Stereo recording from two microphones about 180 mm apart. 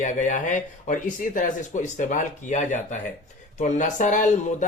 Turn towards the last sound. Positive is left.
turn(degrees=45)  # may be behind; listen again after turning